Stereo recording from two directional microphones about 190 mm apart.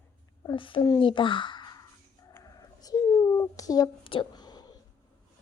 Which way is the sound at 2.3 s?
20° left (ahead or behind).